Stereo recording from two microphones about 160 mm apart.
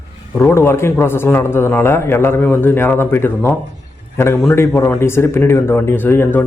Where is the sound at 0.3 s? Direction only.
15° left (ahead or behind).